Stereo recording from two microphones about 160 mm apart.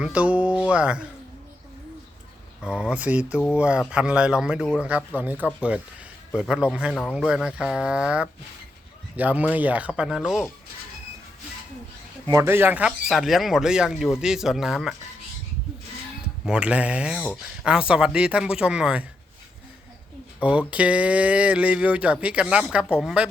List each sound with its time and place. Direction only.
0.0 s speech: 10° right (ahead or behind)
2.6 s speech: 5° right (ahead or behind)
4.9 s speech: 10° right (ahead or behind)
12.3 s speech: 15° right (ahead or behind)
16.5 s speech: 5° right (ahead or behind)
20.4 s speech: 10° right (ahead or behind)